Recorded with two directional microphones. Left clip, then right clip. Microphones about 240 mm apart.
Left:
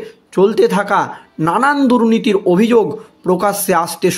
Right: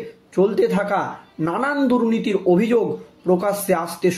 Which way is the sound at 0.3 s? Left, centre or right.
Left.